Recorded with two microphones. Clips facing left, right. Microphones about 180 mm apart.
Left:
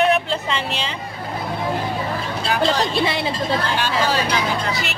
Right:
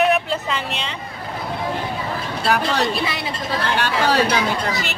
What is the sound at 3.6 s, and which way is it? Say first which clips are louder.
Speech: right 1 dB; 60° right (ahead or behind).